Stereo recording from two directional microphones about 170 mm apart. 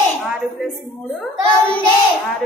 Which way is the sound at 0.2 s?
5° right (ahead or behind).